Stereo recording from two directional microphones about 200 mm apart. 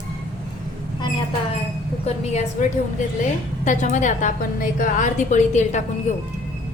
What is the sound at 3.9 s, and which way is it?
A woman's voice, 40° left (ahead or behind).